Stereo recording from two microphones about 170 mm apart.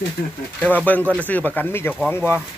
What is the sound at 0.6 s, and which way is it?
Speech, 10° left (ahead or behind).